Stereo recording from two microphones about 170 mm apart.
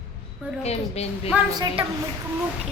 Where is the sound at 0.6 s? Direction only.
40° left (ahead or behind).